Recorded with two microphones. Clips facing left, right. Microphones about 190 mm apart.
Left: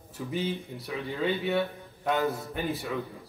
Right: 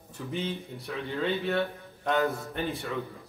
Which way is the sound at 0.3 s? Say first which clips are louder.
Left 2 dB; 5° left (ahead or behind).